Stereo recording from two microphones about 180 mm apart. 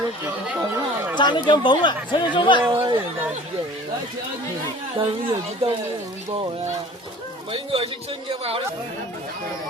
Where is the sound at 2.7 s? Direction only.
25° right (ahead or behind).